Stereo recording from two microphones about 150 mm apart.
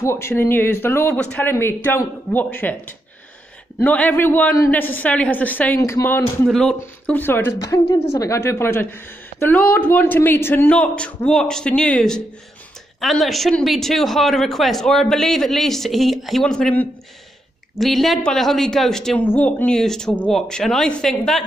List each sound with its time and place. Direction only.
0.0 s a woman's voice: 15° left (ahead or behind)
6.4 s speech: 5° left (ahead or behind)
6.8 s a woman's voice: 15° left (ahead or behind)